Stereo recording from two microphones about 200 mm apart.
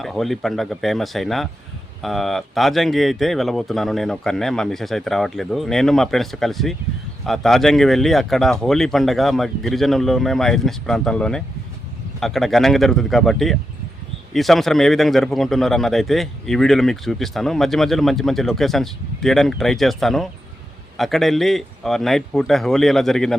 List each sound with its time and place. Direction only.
0.0 s speech: centre (ahead or behind)